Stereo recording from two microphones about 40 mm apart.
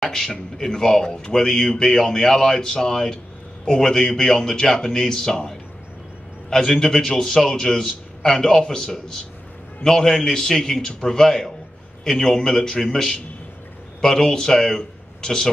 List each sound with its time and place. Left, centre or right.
0.0 s speech: centre
6.7 s speech: centre